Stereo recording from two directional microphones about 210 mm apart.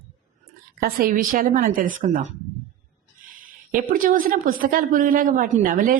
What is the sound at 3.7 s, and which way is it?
A woman's voice, 40° right (ahead or behind).